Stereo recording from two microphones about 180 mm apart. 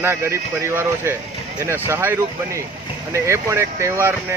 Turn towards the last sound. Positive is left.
turn(degrees=-15)  # may be behind; listen again after turning